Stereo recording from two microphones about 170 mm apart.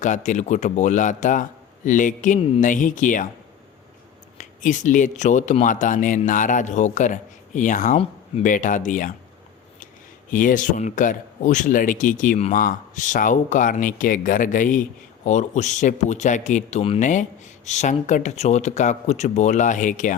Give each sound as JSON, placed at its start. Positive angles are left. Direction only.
{"t": 0.0, "sound": "speech", "side_deg": 45}
{"t": 4.4, "sound": "speech", "side_deg": 45}
{"t": 10.3, "sound": "speech", "side_deg": 50}